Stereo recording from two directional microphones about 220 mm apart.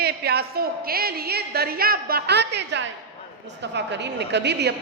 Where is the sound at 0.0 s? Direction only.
45° right (ahead or behind).